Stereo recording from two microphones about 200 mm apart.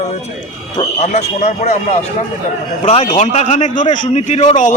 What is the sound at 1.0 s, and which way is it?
A man's voice, 35° left (ahead or behind).